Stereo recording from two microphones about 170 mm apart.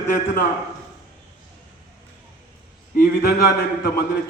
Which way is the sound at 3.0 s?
65° left (ahead or behind).